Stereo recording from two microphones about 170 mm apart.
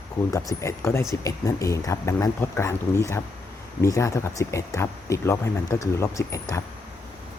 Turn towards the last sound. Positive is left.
turn(degrees=20)  # may be behind; listen again after turning